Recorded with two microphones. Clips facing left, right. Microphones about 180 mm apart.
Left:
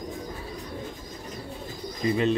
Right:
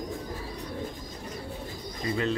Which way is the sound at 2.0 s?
20° left (ahead or behind).